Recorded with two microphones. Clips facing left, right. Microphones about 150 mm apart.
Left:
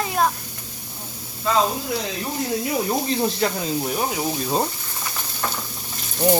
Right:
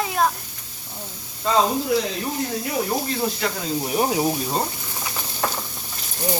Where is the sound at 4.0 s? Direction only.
20° right (ahead or behind).